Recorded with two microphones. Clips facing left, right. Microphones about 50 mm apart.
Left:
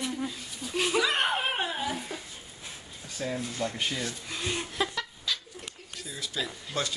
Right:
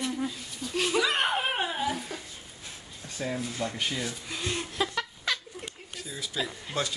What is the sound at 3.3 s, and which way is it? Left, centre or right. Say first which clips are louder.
Speech: left 1 dB; centre.